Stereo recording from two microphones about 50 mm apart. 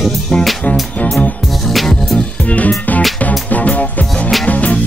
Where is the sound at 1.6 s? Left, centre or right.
Centre.